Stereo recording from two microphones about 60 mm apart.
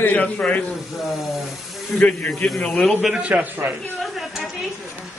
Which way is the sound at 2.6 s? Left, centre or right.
Centre.